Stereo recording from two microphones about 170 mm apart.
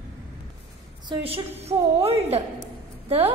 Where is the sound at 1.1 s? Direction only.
35° right (ahead or behind).